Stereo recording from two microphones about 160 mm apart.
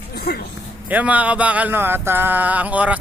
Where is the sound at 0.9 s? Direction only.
10° right (ahead or behind).